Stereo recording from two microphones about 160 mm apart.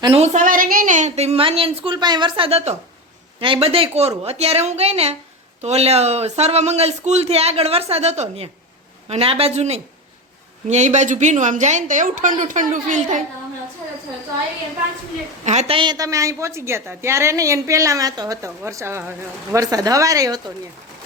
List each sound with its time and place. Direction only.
0.2 s a woman's voice: 55° right (ahead or behind)
15.4 s a woman's voice: 40° right (ahead or behind); by 20.4 s 20° right (ahead or behind)